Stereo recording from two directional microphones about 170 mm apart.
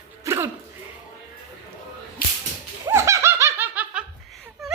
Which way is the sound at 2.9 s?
15° right (ahead or behind).